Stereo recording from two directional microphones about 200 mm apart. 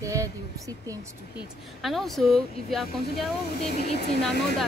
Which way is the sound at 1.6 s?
Centre (ahead or behind).